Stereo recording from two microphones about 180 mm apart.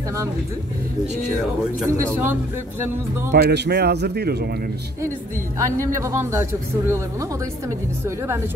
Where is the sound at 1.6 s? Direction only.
Centre (ahead or behind).